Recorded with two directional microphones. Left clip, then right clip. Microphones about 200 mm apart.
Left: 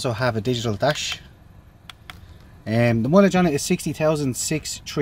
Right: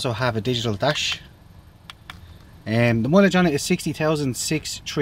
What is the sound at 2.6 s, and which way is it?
Speech, 5° left (ahead or behind).